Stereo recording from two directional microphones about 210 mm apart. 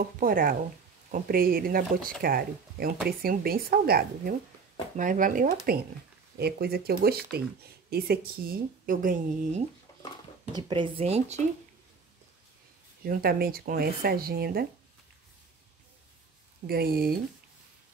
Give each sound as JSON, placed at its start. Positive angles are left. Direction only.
{"t": 0.0, "sound": "speech", "side_deg": -40}
{"t": 10.5, "sound": "speech", "side_deg": -25}
{"t": 13.0, "sound": "speech", "side_deg": -45}
{"t": 16.6, "sound": "speech", "side_deg": -45}